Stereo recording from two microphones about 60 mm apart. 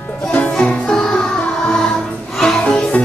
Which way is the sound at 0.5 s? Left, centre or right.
Centre.